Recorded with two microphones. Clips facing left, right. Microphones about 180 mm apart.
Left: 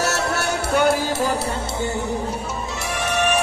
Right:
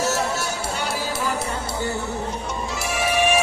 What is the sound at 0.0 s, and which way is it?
Music, 70° left (ahead or behind).